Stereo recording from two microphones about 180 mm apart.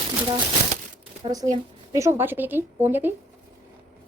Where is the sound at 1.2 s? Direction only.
20° right (ahead or behind).